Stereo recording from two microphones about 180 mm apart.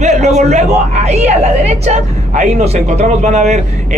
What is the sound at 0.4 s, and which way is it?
Speech, 40° right (ahead or behind).